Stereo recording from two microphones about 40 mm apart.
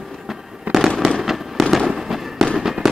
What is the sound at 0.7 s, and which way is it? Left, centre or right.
Fireworks, centre.